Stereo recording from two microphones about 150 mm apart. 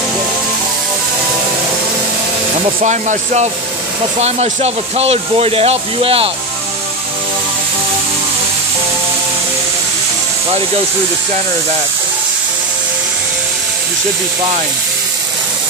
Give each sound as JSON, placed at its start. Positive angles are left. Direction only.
{"t": 2.8, "sound": "speech", "side_deg": -50}